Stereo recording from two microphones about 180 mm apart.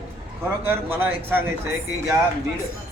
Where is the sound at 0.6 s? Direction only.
10° right (ahead or behind).